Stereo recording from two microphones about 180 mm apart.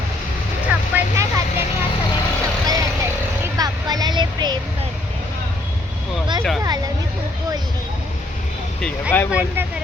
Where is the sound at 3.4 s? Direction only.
20° right (ahead or behind).